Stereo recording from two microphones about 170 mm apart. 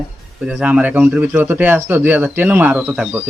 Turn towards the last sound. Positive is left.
turn(degrees=-10)  # may be behind; listen again after turning